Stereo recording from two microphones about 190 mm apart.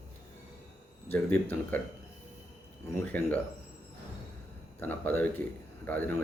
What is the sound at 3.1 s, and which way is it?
Speech, 10° left (ahead or behind).